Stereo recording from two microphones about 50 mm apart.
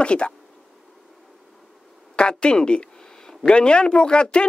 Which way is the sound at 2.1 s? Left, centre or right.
Centre.